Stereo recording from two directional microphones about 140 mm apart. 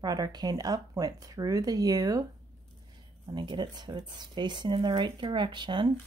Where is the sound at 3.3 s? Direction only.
30° right (ahead or behind).